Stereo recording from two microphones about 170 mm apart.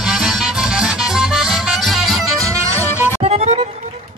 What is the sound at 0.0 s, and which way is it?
Music, 5° right (ahead or behind).